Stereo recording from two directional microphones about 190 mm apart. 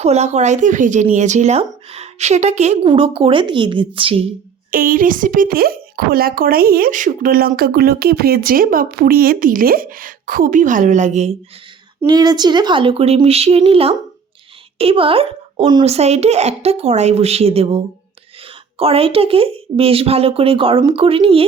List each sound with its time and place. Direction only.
0.0 s a child's voice: 35° right (ahead or behind)
4.7 s speech: 50° right (ahead or behind)
12.0 s a child's voice: 20° right (ahead or behind)